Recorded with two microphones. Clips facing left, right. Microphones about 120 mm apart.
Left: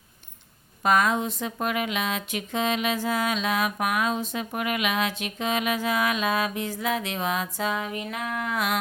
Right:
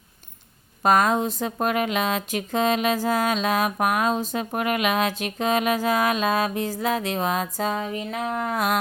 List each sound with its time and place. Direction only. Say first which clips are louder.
0.8 s speech: right 3 dB; 40° right (ahead or behind)